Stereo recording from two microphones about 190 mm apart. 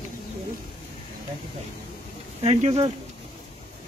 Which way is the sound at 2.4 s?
35° right (ahead or behind).